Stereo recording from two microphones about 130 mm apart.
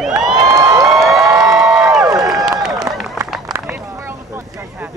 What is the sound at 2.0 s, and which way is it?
Crowd, 30° right (ahead or behind).